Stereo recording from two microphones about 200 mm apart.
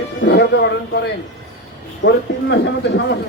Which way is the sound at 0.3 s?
55° left (ahead or behind).